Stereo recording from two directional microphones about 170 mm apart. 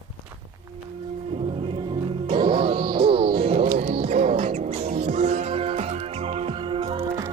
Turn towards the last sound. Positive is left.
turn(degrees=-30)  # may be behind; listen again after turning